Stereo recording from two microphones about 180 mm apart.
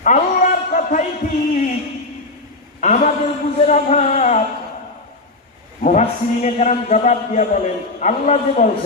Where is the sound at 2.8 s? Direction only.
40° left (ahead or behind).